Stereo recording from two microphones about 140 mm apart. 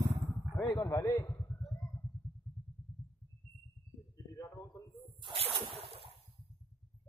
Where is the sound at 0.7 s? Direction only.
25° left (ahead or behind).